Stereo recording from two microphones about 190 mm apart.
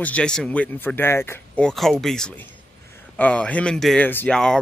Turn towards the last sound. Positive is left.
turn(degrees=5)  # may be behind; listen again after turning